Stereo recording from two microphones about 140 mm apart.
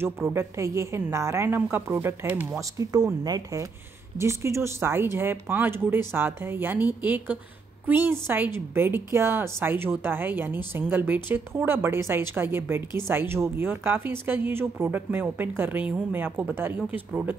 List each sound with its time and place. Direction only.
0.0 s a woman's voice: 15° right (ahead or behind)
2.8 s a woman's voice: 25° right (ahead or behind)